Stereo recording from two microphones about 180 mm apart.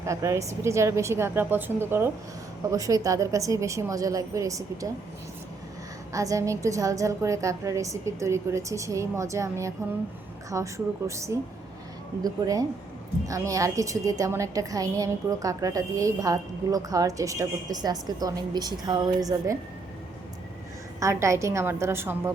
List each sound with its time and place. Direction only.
0.0 s a woman's voice: 15° right (ahead or behind)
6.1 s a woman's voice: 20° right (ahead or behind)
21.0 s a woman's voice: 15° right (ahead or behind)